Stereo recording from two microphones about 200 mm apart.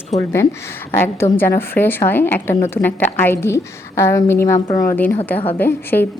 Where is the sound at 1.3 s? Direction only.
10° left (ahead or behind).